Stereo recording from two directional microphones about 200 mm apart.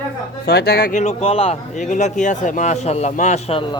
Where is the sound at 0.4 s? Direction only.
50° left (ahead or behind).